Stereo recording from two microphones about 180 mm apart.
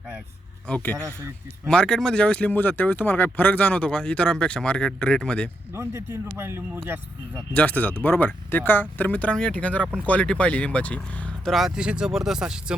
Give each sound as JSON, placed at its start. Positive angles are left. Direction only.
{"t": 0.7, "sound": "speech", "side_deg": 10}
{"t": 0.9, "sound": "speech", "side_deg": -15}
{"t": 1.6, "sound": "speech", "side_deg": 5}
{"t": 5.7, "sound": "speech", "side_deg": -15}
{"t": 7.5, "sound": "speech", "side_deg": 10}